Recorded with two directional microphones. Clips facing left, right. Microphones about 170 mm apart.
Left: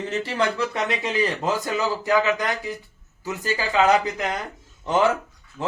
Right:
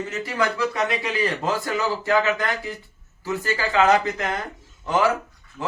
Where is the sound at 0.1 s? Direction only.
30° left (ahead or behind).